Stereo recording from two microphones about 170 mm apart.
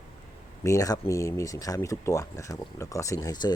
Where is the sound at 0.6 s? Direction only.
20° left (ahead or behind).